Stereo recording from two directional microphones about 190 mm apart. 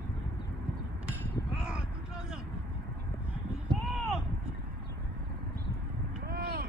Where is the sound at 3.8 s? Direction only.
Centre (ahead or behind).